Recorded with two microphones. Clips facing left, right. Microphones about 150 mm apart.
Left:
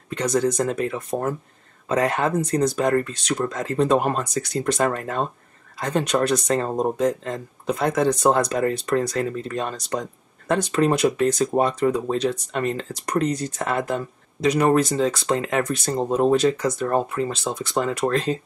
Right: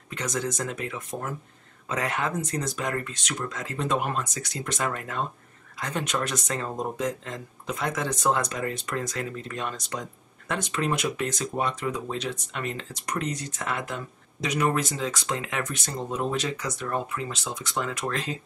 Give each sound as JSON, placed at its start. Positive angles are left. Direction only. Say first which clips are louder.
{"t": 0.2, "sound": "speech", "louder": "left 9 dB", "side_deg": 35}